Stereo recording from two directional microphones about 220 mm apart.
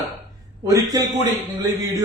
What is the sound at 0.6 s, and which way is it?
A man's voice, 15° right (ahead or behind).